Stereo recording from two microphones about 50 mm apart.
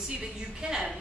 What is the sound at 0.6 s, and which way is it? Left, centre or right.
Speech, right.